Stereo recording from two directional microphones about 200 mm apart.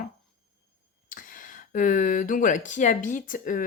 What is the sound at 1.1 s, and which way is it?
Speech, 45° left (ahead or behind).